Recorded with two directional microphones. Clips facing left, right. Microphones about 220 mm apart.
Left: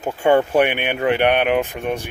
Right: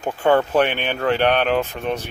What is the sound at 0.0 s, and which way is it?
Speech, 15° left (ahead or behind).